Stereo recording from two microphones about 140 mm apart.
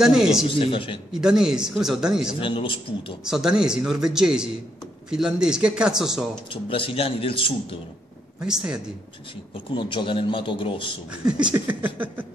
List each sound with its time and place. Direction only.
0.0 s speech: 5° right (ahead or behind)
0.5 s a man's voice: 40° left (ahead or behind)
1.1 s speech: 5° right (ahead or behind)
2.4 s a man's voice: 40° left (ahead or behind)
3.3 s speech: 5° right (ahead or behind)
6.5 s a man's voice: 40° left (ahead or behind)
8.5 s speech: 5° right (ahead or behind)
9.7 s a man's voice: 35° left (ahead or behind)
11.1 s a sound: 5° right (ahead or behind)